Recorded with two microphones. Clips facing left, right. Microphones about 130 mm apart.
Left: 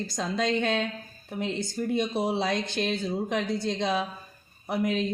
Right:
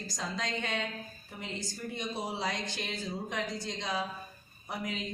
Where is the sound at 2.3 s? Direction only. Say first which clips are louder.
Left 8 dB; 65° left (ahead or behind).